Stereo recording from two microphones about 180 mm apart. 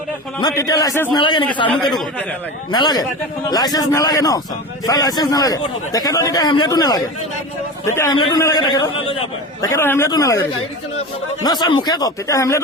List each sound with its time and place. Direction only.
0.3 s a man's voice: 20° left (ahead or behind)
1.7 s speech: 5° left (ahead or behind)
2.7 s a man's voice: 25° left (ahead or behind)
9.6 s speech: 15° left (ahead or behind)
11.4 s a man's voice: 25° left (ahead or behind)